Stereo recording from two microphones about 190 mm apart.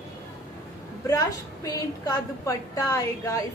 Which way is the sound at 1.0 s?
15° left (ahead or behind).